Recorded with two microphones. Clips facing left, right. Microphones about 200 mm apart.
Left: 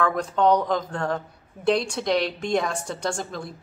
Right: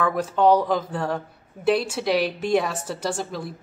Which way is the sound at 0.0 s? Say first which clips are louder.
Right 1 dB; 5° right (ahead or behind).